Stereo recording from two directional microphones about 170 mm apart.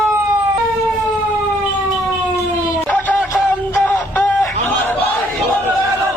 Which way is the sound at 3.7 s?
10° left (ahead or behind).